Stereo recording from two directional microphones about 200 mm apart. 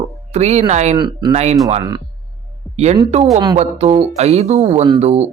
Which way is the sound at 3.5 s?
35° right (ahead or behind).